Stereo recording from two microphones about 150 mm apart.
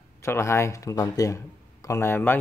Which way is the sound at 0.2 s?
20° left (ahead or behind).